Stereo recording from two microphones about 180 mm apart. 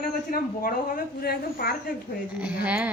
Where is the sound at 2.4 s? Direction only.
10° right (ahead or behind).